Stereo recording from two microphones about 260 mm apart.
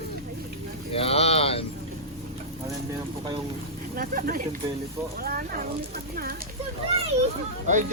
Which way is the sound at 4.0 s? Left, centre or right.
Right.